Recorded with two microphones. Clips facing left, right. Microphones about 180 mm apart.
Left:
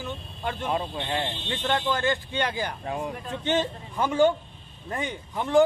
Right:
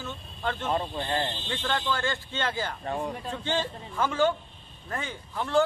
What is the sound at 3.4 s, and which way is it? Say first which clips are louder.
A man's voice: left 6 dB; 20° left (ahead or behind).